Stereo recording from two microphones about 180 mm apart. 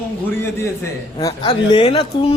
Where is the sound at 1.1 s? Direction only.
20° left (ahead or behind).